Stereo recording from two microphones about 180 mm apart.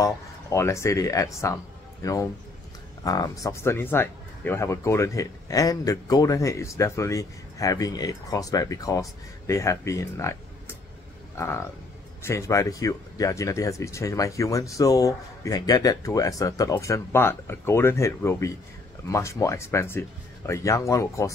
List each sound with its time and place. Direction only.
0.0 s speech: 15° left (ahead or behind)
11.3 s speech: 15° left (ahead or behind)